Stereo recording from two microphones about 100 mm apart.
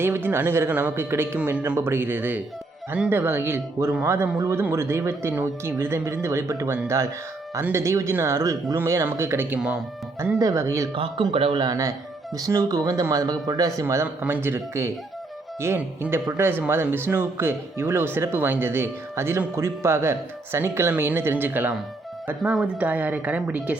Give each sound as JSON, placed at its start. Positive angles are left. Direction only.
{"t": 0.0, "sound": "speech", "side_deg": -20}
{"t": 10.9, "sound": "speech", "side_deg": -60}
{"t": 11.6, "sound": "a woman's voice", "side_deg": -35}